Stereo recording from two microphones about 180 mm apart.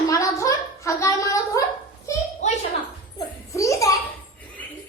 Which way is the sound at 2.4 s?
40° left (ahead or behind).